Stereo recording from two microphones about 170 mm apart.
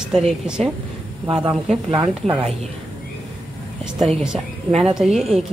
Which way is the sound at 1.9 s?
35° right (ahead or behind).